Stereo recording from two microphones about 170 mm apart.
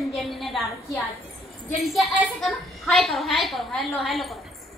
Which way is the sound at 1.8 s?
Centre (ahead or behind).